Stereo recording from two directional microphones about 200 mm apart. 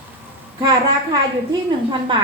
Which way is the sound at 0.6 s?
20° right (ahead or behind).